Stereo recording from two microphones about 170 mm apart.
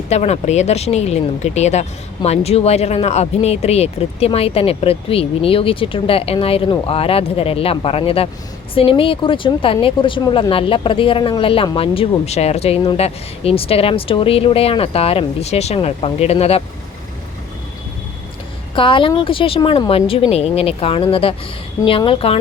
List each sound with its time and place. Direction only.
0.1 s speech: 40° left (ahead or behind)
18.7 s speech: 30° left (ahead or behind)